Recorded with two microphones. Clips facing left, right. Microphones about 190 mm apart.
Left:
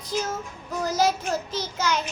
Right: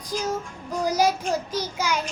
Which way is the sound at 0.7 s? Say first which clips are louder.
Right 1 dB; 10° right (ahead or behind).